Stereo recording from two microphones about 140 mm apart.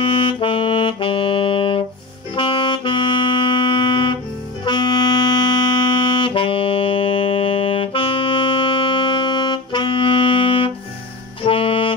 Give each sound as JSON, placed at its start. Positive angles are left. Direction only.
{"t": 0.0, "sound": "saxophone", "side_deg": 35}
{"t": 4.6, "sound": "music", "side_deg": 30}
{"t": 11.4, "sound": "saxophone", "side_deg": 40}